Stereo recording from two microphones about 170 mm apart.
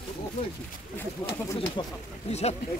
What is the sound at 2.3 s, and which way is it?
Speech, 40° left (ahead or behind).